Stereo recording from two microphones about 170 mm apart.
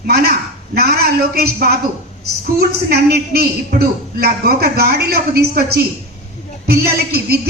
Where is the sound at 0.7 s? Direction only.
65° right (ahead or behind).